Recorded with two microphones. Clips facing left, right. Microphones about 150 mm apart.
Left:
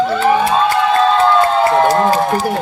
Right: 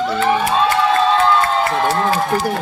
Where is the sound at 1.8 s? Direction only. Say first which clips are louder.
Left 4 dB; 40° left (ahead or behind).